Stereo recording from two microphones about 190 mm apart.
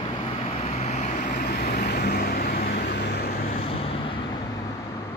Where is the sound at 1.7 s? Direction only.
60° left (ahead or behind).